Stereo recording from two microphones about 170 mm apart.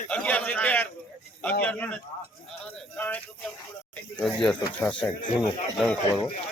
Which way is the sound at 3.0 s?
10° left (ahead or behind).